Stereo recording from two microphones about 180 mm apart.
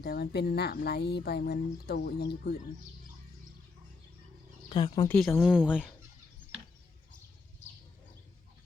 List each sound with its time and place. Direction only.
0.0 s speech: 65° left (ahead or behind)
4.7 s speech: 25° left (ahead or behind)
5.0 s speech: 5° left (ahead or behind)